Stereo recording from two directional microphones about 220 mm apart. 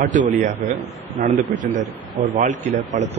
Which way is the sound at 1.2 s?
35° right (ahead or behind).